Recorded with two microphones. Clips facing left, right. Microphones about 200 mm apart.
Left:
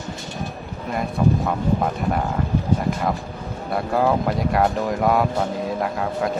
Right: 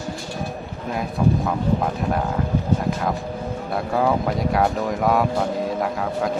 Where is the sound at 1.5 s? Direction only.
Centre (ahead or behind).